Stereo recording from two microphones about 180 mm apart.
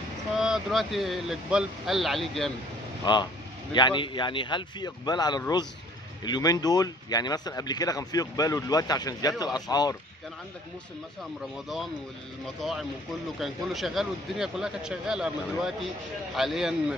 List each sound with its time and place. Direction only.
0.4 s speech: centre (ahead or behind)
3.0 s speech: 25° left (ahead or behind)
12.5 s speech: centre (ahead or behind)